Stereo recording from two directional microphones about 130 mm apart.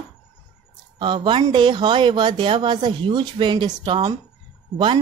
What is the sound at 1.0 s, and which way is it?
Speech, 40° right (ahead or behind).